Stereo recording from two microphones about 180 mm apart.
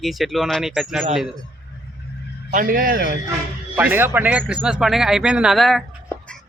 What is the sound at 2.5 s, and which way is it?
Speech, 50° right (ahead or behind).